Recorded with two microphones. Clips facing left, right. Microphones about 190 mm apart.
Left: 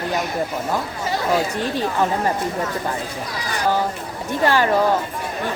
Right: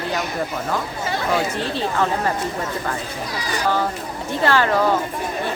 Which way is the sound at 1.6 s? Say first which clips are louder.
Left 1 dB; 15° left (ahead or behind).